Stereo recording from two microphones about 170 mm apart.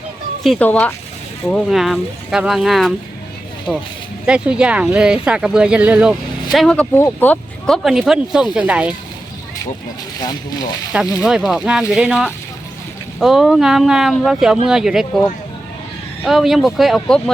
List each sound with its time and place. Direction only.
0.4 s speech: 5° left (ahead or behind)
7.9 s speech: centre (ahead or behind)
10.2 s speech: 20° left (ahead or behind)
11.2 s speech: 5° right (ahead or behind)
16.2 s speech: centre (ahead or behind)